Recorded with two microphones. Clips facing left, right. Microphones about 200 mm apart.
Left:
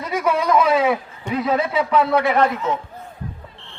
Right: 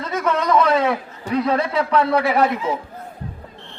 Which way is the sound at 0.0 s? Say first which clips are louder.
Left 1 dB; 10° left (ahead or behind).